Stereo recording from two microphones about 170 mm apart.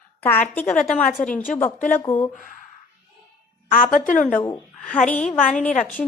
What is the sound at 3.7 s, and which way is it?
Speech, 50° left (ahead or behind).